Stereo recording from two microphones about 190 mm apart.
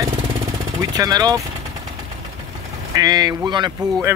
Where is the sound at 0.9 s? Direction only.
20° right (ahead or behind).